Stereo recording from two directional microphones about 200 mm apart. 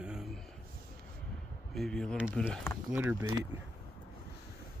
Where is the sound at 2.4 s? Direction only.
10° left (ahead or behind).